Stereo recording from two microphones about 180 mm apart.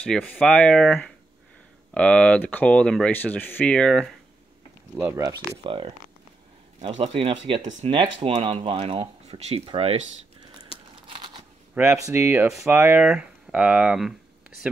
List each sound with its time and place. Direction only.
0.0 s speech: 5° left (ahead or behind)
5.0 s speech: 20° right (ahead or behind)
5.6 s speech: 30° right (ahead or behind)
7.0 s speech: 30° right (ahead or behind)
11.1 s a sound: 25° right (ahead or behind)
11.7 s speech: 10° right (ahead or behind)